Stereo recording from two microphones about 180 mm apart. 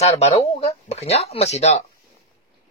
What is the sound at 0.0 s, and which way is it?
Speech, 35° left (ahead or behind).